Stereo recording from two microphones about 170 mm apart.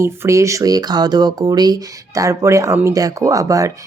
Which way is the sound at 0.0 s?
15° right (ahead or behind).